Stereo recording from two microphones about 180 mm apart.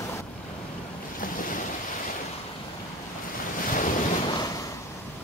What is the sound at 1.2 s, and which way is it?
Waves, 50° left (ahead or behind).